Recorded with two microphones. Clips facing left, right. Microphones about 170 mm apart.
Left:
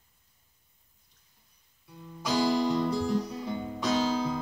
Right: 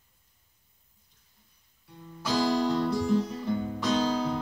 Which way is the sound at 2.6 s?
5° left (ahead or behind).